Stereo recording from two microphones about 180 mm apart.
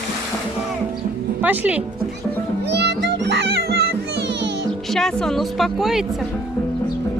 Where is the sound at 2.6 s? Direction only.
70° right (ahead or behind).